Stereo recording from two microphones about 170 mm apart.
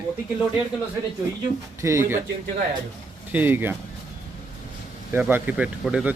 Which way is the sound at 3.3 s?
10° right (ahead or behind).